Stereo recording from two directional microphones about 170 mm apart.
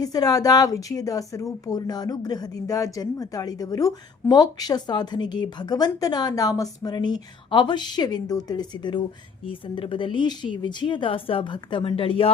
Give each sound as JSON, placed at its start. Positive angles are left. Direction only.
{"t": 0.0, "sound": "a woman's voice", "side_deg": 20}